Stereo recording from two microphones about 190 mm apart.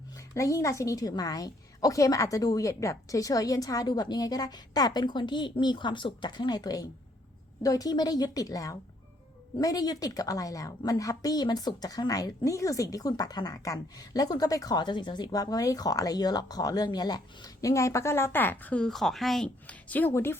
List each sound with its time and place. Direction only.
0.3 s a woman's voice: 15° left (ahead or behind)